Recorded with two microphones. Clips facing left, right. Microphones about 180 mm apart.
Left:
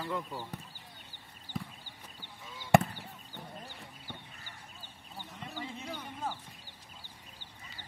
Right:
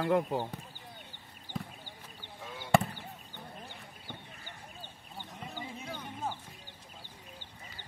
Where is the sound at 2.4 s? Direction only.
60° right (ahead or behind).